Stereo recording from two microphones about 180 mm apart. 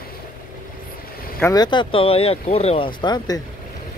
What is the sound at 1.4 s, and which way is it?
Speech, 20° left (ahead or behind).